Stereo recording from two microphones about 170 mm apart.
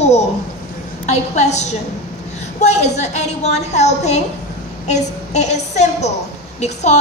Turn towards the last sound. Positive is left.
turn(degrees=40)  # may be behind; listen again after turning